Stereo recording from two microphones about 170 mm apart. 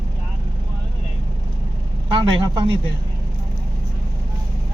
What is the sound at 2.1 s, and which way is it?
Speech, 30° right (ahead or behind).